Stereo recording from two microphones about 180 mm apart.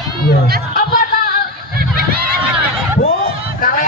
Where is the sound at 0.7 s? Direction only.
50° left (ahead or behind).